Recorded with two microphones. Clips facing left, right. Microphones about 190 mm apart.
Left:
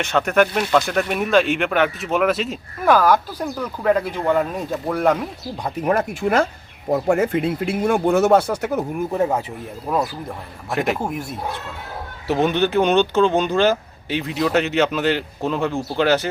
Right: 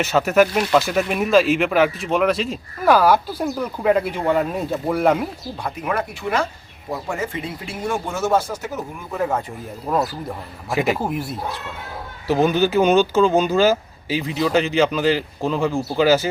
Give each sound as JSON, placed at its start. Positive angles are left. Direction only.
{"t": 0.0, "sound": "speech", "side_deg": -5}
{"t": 5.8, "sound": "speech", "side_deg": 40}
{"t": 9.8, "sound": "speech", "side_deg": 0}
{"t": 12.3, "sound": "speech", "side_deg": 0}